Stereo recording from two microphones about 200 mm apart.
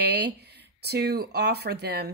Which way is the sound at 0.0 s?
55° right (ahead or behind).